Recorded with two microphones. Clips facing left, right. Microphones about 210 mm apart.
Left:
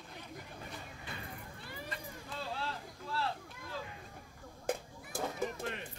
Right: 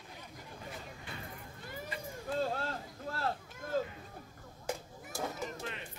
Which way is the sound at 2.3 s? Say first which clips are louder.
Right 7 dB; 45° right (ahead or behind).